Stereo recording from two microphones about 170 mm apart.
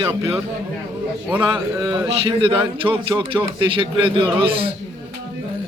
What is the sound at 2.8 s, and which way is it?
Speech, 15° right (ahead or behind).